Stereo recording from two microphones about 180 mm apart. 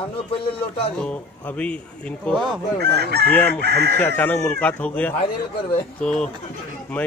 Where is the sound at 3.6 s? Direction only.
65° right (ahead or behind).